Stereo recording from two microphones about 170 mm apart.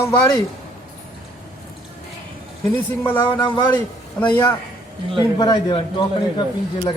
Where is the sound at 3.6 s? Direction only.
10° left (ahead or behind).